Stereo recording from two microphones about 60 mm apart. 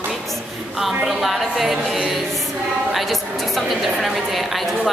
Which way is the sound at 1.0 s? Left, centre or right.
Centre.